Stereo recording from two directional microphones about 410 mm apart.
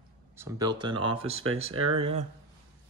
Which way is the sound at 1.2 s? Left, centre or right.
Right.